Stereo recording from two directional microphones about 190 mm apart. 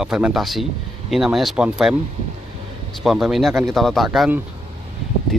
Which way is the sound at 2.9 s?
Centre (ahead or behind).